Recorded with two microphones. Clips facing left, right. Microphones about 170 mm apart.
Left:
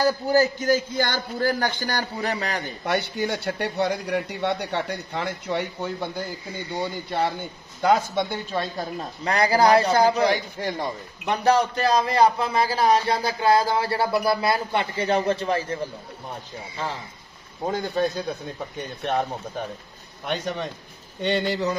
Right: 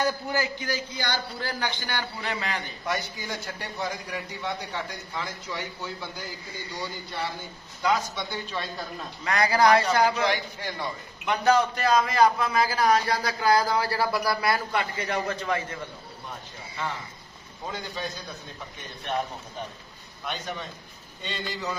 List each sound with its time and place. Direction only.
0.0 s a man's voice: 40° left (ahead or behind)
2.8 s a man's voice: 65° left (ahead or behind); by 8.8 s 45° left (ahead or behind)
9.2 s a man's voice: 30° left (ahead or behind)
11.2 s a man's voice: 30° left (ahead or behind)
17.6 s a man's voice: 50° left (ahead or behind)
20.2 s speech: 65° left (ahead or behind)